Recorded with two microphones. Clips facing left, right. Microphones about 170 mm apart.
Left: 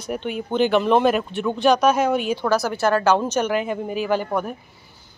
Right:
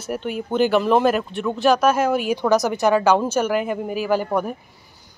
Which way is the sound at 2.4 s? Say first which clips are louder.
Right 2 dB; 15° right (ahead or behind).